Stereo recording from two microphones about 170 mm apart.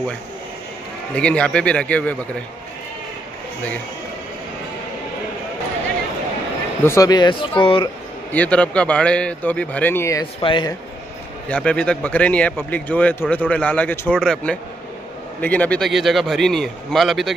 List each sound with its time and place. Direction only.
1.1 s a man's voice: 5° left (ahead or behind)
6.8 s speech: 15° left (ahead or behind)
8.3 s a man's voice: 10° left (ahead or behind)
10.4 s speech: 30° left (ahead or behind)
11.4 s a man's voice: 5° left (ahead or behind)